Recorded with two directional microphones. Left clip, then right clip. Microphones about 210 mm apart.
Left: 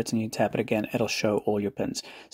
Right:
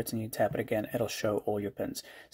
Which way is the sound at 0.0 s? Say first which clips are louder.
Left 4 dB; 25° left (ahead or behind).